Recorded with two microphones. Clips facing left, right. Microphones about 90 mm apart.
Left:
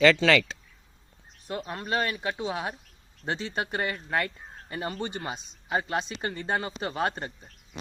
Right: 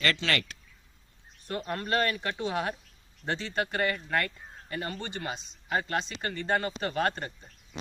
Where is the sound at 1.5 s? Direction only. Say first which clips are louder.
Even; 15° left (ahead or behind).